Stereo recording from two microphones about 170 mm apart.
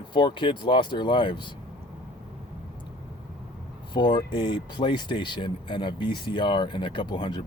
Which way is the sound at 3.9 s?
25° left (ahead or behind).